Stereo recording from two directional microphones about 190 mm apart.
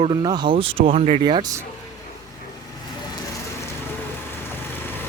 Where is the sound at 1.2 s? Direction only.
25° right (ahead or behind).